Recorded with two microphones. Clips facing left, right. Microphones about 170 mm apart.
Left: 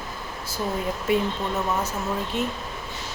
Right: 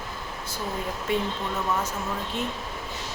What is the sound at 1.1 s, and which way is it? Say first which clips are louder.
Speech: left 4 dB; 10° left (ahead or behind).